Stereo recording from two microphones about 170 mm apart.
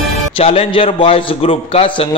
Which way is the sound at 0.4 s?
35° left (ahead or behind).